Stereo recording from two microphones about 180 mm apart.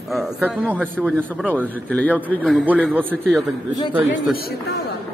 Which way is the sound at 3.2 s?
Centre (ahead or behind).